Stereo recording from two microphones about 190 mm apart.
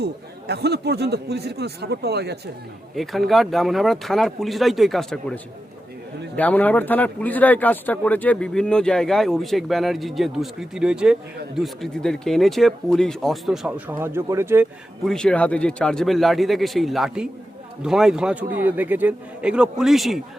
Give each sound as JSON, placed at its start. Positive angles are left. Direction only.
{"t": 0.0, "sound": "speech", "side_deg": -60}
{"t": 2.9, "sound": "speech", "side_deg": 0}
{"t": 15.0, "sound": "speech", "side_deg": 5}